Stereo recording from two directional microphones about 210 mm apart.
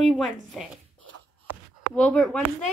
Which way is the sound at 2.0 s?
5° left (ahead or behind).